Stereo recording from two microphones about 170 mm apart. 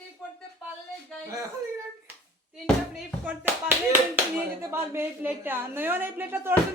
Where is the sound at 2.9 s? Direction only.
10° right (ahead or behind).